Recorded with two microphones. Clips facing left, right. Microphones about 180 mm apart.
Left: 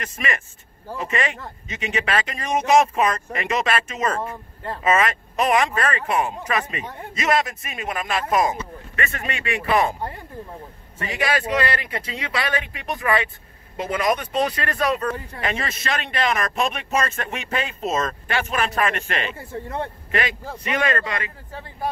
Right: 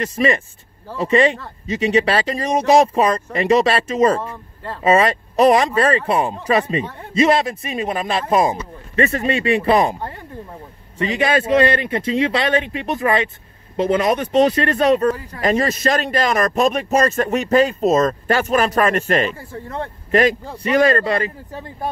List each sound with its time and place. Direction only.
0.0 s a man's voice: 30° right (ahead or behind)
4.2 s speech: 15° left (ahead or behind)
4.8 s a man's voice: 30° right (ahead or behind)
11.1 s speech: 25° right (ahead or behind)
15.4 s a man's voice: 40° right (ahead or behind)
19.3 s speech: 20° left (ahead or behind)
20.1 s a man's voice: 40° right (ahead or behind)